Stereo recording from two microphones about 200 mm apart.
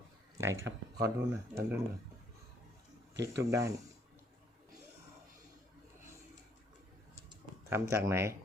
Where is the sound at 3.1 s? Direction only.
60° right (ahead or behind).